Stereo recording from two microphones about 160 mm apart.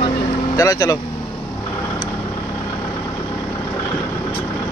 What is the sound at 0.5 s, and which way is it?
Speech, 25° left (ahead or behind).